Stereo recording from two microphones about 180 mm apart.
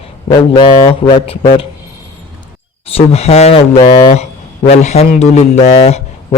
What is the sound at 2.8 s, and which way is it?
A man's voice, 35° left (ahead or behind).